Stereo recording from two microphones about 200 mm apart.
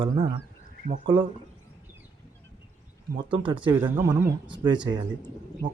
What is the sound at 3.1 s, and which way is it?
Speech, 25° right (ahead or behind).